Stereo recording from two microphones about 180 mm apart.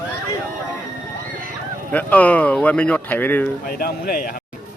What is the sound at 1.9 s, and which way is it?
Speech, 10° left (ahead or behind).